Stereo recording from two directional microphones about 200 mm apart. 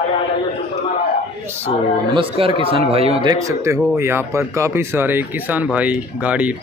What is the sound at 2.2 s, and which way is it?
Speech, 25° right (ahead or behind).